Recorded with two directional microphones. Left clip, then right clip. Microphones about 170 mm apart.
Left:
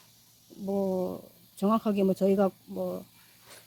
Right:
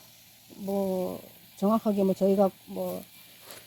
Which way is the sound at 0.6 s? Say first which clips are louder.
Even; 5° left (ahead or behind).